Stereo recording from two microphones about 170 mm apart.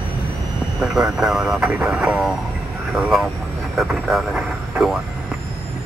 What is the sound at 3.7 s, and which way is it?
Vehicle, 5° right (ahead or behind).